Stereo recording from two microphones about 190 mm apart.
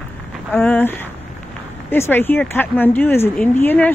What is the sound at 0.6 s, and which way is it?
Speech, 10° left (ahead or behind).